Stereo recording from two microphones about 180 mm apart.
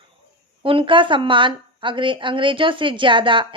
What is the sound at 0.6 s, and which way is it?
A woman's voice, 30° right (ahead or behind).